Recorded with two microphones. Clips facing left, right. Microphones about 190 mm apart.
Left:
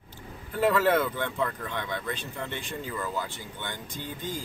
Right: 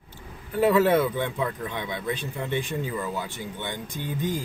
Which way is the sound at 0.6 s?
15° right (ahead or behind).